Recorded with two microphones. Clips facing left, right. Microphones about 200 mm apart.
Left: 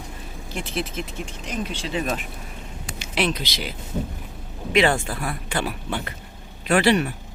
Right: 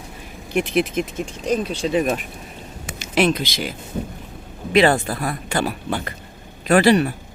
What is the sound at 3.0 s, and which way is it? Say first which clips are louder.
Speech: right 6 dB; 45° right (ahead or behind).